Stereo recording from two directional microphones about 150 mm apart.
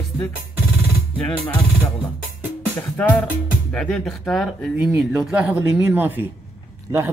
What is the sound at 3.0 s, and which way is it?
A man's voice, 10° left (ahead or behind).